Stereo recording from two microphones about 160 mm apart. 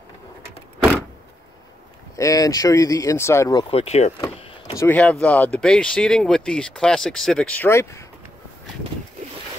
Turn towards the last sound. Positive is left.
turn(degrees=15)  # may be behind; listen again after turning